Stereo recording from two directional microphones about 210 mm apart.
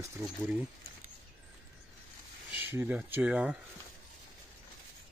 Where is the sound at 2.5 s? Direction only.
10° right (ahead or behind).